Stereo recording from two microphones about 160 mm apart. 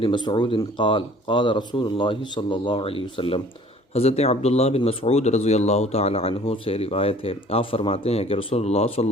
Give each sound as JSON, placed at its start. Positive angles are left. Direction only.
{"t": 0.0, "sound": "speech", "side_deg": 30}